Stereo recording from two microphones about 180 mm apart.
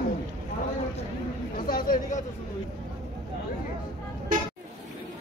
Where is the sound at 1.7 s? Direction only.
50° left (ahead or behind).